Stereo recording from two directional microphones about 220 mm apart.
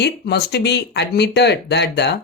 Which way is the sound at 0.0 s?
45° left (ahead or behind).